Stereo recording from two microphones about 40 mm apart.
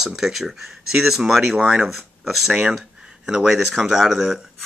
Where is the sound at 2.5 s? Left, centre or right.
Right.